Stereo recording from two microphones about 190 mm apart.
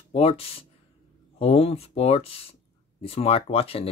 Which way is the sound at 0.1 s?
30° left (ahead or behind).